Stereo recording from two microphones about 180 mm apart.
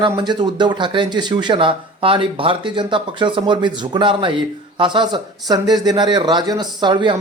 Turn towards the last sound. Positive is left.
turn(degrees=-25)  # may be behind; listen again after turning